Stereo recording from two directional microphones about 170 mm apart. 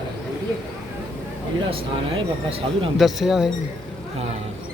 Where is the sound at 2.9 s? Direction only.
Centre (ahead or behind).